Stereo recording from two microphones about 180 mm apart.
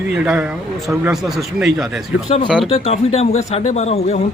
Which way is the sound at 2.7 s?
35° left (ahead or behind).